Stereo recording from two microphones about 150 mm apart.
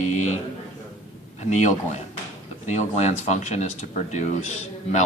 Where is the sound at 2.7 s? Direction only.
50° left (ahead or behind).